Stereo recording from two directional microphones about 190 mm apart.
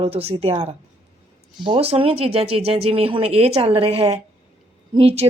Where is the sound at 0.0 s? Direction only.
30° right (ahead or behind).